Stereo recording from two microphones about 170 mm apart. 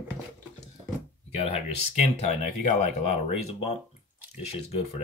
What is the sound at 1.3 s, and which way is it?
Speech, 35° left (ahead or behind).